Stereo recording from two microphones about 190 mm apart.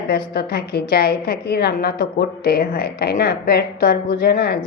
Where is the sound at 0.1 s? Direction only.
55° left (ahead or behind).